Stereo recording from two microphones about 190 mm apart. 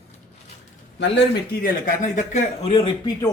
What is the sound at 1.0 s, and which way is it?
Speech, 65° left (ahead or behind).